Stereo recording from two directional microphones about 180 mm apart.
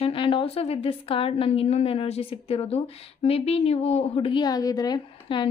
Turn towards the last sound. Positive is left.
turn(degrees=25)  # may be behind; listen again after turning